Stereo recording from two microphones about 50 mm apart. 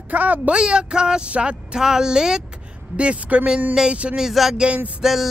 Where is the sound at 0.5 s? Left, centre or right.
Centre.